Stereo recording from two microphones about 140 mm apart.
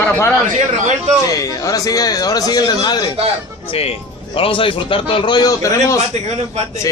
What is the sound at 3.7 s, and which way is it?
A man's voice, 40° left (ahead or behind).